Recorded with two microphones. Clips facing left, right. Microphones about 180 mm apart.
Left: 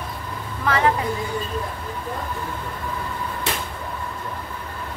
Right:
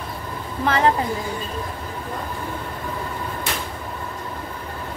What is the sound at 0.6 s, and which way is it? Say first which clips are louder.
Speech: right 1 dB; 30° right (ahead or behind).